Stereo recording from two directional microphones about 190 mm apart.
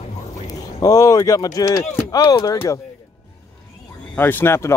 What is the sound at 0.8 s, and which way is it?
Speech, 20° left (ahead or behind).